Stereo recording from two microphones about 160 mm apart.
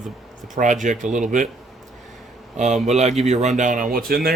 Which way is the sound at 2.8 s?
45° right (ahead or behind).